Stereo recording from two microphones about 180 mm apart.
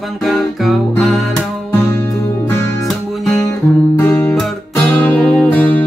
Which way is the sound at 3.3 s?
15° left (ahead or behind).